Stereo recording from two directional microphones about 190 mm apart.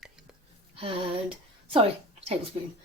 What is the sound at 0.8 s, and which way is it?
Speech, 30° right (ahead or behind).